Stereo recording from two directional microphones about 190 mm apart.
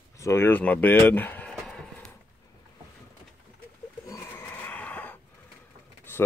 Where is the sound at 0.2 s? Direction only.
15° left (ahead or behind).